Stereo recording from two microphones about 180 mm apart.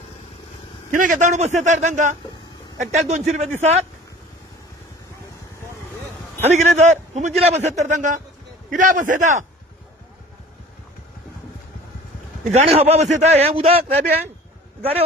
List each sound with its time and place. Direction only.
0.9 s a man's voice: 45° right (ahead or behind)
6.4 s a man's voice: 40° right (ahead or behind)
12.4 s a man's voice: 40° right (ahead or behind)